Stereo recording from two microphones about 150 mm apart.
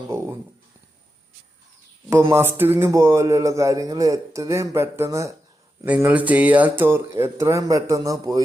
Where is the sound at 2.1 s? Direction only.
20° right (ahead or behind).